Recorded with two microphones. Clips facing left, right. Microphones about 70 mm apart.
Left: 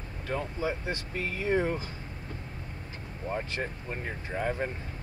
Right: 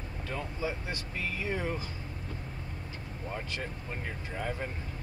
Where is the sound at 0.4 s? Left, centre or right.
Left.